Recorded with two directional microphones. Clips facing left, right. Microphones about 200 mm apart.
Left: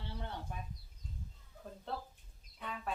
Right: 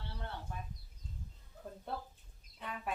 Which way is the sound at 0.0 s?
15° left (ahead or behind).